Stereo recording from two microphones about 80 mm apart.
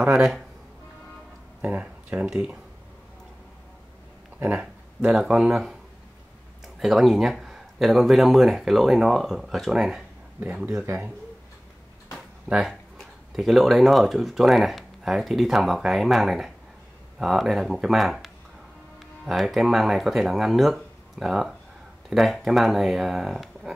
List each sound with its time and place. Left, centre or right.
0.0 s speech: centre
1.6 s speech: centre
4.6 s speech: centre
10.4 s speech: centre
12.4 s speech: centre